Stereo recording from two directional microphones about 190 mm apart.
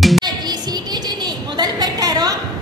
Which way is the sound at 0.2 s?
20° right (ahead or behind).